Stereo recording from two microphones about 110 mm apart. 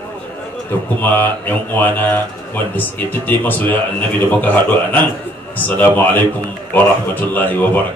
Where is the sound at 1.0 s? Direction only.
15° left (ahead or behind).